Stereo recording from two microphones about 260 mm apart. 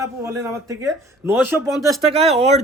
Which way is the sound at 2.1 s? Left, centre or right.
Right.